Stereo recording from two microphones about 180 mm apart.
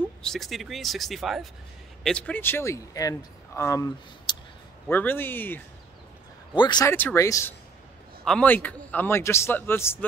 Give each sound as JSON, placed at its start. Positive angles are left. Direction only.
{"t": 0.2, "sound": "speech", "side_deg": 0}
{"t": 6.5, "sound": "speech", "side_deg": 25}
{"t": 6.9, "sound": "speech", "side_deg": 10}